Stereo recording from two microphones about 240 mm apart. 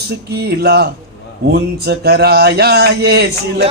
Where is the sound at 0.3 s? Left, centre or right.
Right.